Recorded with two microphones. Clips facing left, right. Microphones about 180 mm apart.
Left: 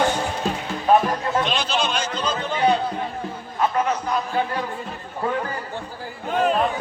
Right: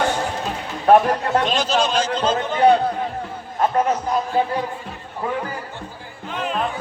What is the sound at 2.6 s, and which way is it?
Speech, 60° right (ahead or behind).